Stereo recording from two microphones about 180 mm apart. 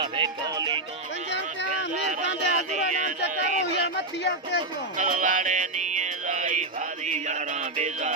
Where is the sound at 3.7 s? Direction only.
75° left (ahead or behind).